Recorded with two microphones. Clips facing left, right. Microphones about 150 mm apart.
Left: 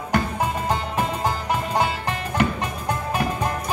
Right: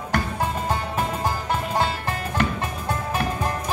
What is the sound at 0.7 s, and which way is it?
Music, 15° left (ahead or behind).